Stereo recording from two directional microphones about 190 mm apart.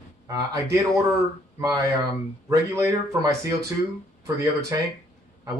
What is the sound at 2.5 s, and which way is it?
Speech, 15° right (ahead or behind).